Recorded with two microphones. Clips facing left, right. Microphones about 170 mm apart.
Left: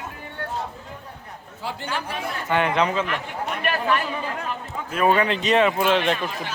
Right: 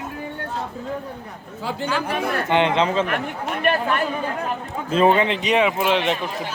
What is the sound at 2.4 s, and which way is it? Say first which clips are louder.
Speech: right 1 dB; 20° right (ahead or behind).